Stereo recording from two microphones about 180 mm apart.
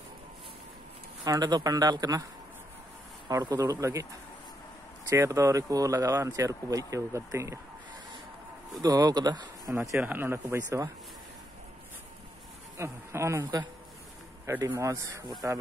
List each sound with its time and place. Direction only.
1.2 s speech: 20° right (ahead or behind)
3.3 s speech: 20° right (ahead or behind)
5.1 s speech: 15° right (ahead or behind)
8.8 s speech: 20° right (ahead or behind)
12.7 s speech: 15° right (ahead or behind)